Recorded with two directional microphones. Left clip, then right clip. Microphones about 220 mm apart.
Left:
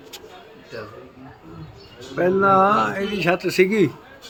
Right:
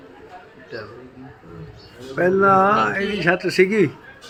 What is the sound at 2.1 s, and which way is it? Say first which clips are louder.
A man's voice: right 1 dB; centre (ahead or behind).